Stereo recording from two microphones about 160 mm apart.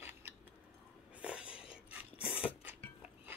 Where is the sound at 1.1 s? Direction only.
5° right (ahead or behind).